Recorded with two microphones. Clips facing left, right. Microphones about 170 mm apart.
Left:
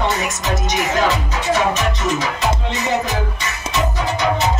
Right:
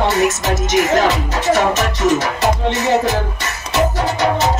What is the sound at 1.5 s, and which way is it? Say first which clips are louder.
Music: right 2 dB; 70° right (ahead or behind).